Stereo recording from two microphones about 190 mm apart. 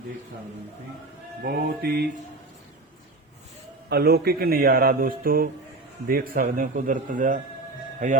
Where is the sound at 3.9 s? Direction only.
55° right (ahead or behind).